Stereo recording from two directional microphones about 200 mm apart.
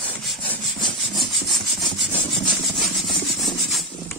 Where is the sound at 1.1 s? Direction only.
Centre (ahead or behind).